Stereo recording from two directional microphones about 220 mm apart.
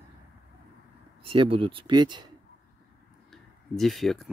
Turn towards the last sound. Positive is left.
turn(degrees=0)  # may be behind; listen again after turning